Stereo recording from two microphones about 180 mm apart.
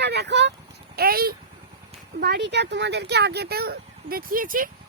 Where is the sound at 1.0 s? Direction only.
55° right (ahead or behind).